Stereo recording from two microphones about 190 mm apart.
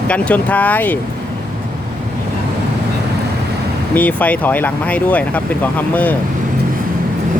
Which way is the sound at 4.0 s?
10° left (ahead or behind).